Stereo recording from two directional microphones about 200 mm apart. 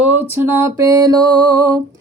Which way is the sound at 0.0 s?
10° right (ahead or behind).